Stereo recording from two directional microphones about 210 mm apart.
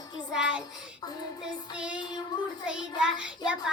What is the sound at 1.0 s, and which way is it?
Music, 20° left (ahead or behind).